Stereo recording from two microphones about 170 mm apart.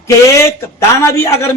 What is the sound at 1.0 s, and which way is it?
Speech, 15° left (ahead or behind).